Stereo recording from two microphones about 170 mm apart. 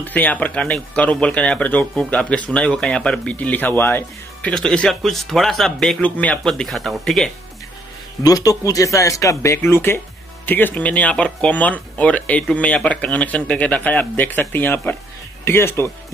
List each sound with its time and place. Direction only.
0.0 s speech: 10° left (ahead or behind)
8.2 s speech: 20° left (ahead or behind)